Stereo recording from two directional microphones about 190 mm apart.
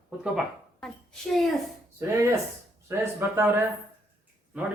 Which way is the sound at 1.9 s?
15° right (ahead or behind).